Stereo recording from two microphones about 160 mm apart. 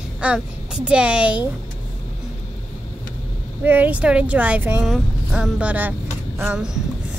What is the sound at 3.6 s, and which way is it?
Speech, 10° right (ahead or behind).